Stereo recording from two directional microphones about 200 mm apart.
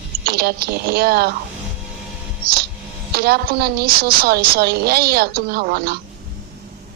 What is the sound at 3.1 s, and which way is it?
A woman's voice, 50° right (ahead or behind).